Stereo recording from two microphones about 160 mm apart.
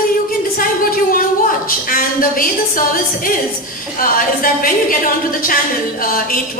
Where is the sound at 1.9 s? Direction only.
60° left (ahead or behind).